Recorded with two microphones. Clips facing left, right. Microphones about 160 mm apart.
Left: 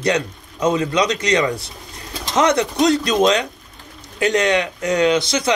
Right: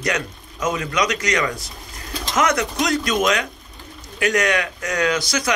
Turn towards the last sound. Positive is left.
turn(degrees=25)  # may be behind; listen again after turning